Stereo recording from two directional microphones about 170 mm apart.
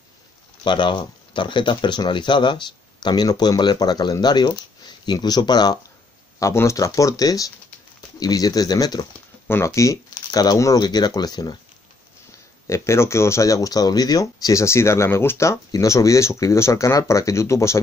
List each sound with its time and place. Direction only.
0.7 s speech: 25° left (ahead or behind)
12.6 s speech: 15° left (ahead or behind)